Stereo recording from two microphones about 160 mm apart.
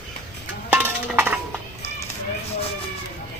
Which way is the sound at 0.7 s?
10° right (ahead or behind).